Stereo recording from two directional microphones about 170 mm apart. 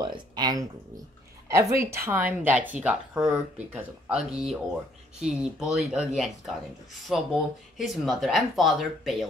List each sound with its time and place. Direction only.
0.0 s speech: 25° right (ahead or behind); by 9.1 s centre (ahead or behind)